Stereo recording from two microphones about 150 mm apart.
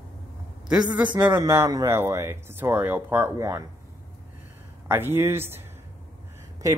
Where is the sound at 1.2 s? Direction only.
20° right (ahead or behind).